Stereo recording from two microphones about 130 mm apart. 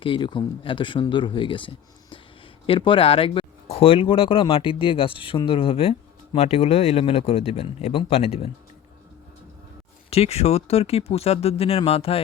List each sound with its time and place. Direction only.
0.0 s speech: 40° left (ahead or behind)
10.1 s speech: 55° left (ahead or behind)